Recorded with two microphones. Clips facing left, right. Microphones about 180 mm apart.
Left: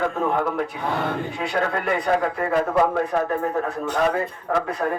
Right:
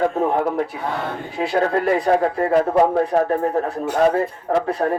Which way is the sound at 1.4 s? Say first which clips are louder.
Right 8 dB; 35° right (ahead or behind).